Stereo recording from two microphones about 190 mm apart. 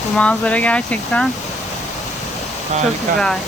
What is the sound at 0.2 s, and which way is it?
Speech, 5° left (ahead or behind).